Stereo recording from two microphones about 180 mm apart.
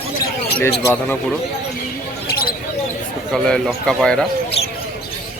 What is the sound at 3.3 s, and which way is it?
Speech, 5° left (ahead or behind).